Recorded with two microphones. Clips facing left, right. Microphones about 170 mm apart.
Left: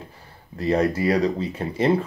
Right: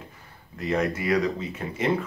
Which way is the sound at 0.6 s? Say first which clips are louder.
Left 5 dB; 35° left (ahead or behind).